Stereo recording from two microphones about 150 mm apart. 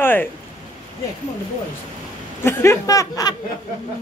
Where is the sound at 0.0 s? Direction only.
15° left (ahead or behind).